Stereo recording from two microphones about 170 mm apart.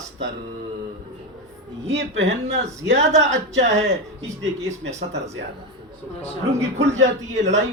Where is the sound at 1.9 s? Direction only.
40° right (ahead or behind).